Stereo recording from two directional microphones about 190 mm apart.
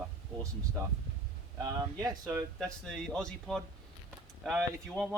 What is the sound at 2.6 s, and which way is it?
Speech, 5° left (ahead or behind).